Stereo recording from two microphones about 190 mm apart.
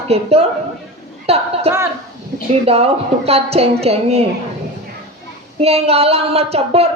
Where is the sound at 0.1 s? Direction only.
35° right (ahead or behind).